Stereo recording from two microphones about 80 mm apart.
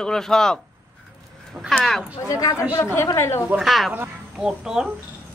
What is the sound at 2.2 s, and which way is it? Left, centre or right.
Speech, left.